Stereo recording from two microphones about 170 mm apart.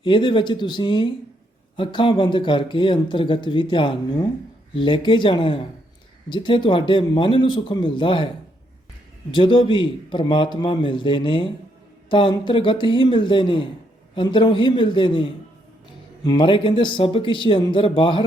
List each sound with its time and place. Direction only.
0.0 s speech: 30° left (ahead or behind)
9.3 s speech: 25° left (ahead or behind)